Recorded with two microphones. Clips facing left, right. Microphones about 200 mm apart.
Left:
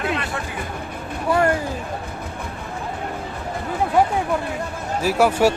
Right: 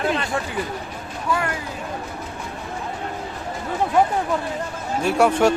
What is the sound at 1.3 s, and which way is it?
Speech, 40° left (ahead or behind).